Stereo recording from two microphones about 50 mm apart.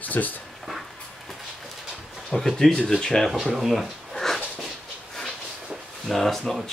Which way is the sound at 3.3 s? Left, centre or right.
Centre.